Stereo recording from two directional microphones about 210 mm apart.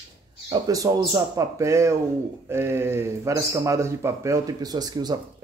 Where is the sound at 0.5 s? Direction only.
15° right (ahead or behind).